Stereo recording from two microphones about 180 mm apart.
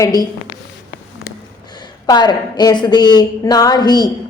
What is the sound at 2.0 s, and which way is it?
A woman's voice, 25° left (ahead or behind).